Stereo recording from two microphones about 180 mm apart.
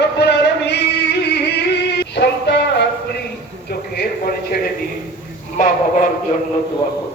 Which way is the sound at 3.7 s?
60° left (ahead or behind).